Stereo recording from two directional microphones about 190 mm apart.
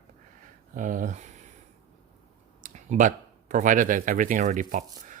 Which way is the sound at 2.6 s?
45° right (ahead or behind).